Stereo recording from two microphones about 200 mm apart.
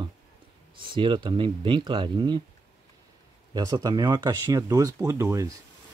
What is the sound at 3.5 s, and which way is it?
Speech, 20° right (ahead or behind).